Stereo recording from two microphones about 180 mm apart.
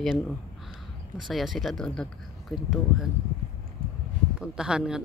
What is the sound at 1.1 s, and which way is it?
Speech, centre (ahead or behind).